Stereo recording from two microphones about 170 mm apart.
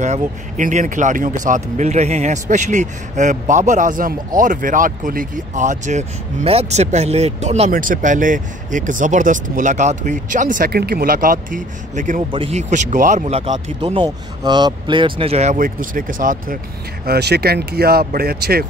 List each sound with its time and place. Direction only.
0.0 s speech: 45° right (ahead or behind)
7.7 s speech: 55° right (ahead or behind)
12.3 s speech: 35° right (ahead or behind); by 16.5 s 55° right (ahead or behind)
17.0 s speech: 70° right (ahead or behind)